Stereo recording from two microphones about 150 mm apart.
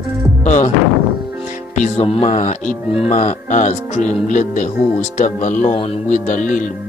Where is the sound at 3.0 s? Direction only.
55° left (ahead or behind).